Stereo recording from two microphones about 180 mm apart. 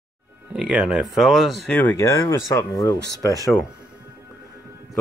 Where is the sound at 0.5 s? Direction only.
5° right (ahead or behind); by 3.3 s 20° left (ahead or behind).